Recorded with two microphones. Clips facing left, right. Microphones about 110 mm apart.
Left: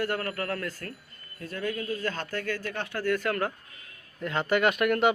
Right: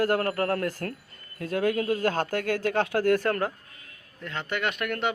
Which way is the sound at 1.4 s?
60° right (ahead or behind).